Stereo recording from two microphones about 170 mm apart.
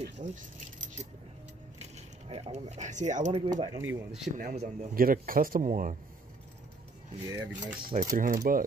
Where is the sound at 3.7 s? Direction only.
15° right (ahead or behind).